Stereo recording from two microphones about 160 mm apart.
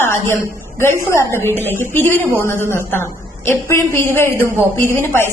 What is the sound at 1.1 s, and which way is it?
A woman's voice, 15° left (ahead or behind).